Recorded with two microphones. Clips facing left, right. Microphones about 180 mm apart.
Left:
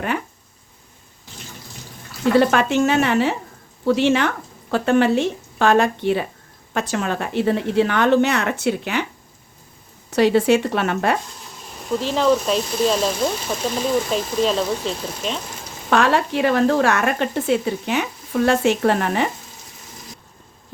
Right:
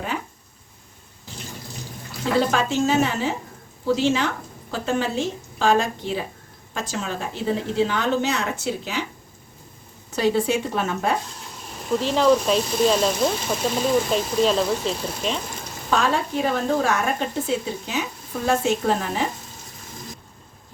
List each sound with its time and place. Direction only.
2.4 s a woman's voice: 65° left (ahead or behind)
10.2 s speech: 70° left (ahead or behind)
11.8 s speech: centre (ahead or behind)
15.9 s speech: 75° left (ahead or behind)